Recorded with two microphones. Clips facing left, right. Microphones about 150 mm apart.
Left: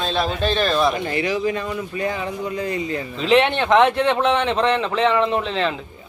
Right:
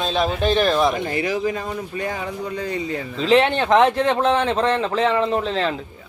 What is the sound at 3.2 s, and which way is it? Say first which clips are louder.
A man's voice: even; 35° right (ahead or behind).